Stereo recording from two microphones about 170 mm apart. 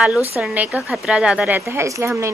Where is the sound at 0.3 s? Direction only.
10° right (ahead or behind).